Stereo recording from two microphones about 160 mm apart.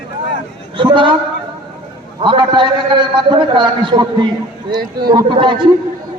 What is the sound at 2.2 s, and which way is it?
A man's voice, 30° right (ahead or behind).